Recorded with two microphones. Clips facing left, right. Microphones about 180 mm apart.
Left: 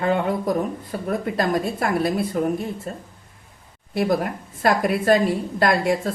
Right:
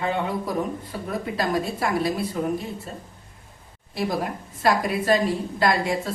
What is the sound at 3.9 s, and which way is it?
A woman's voice, 55° left (ahead or behind).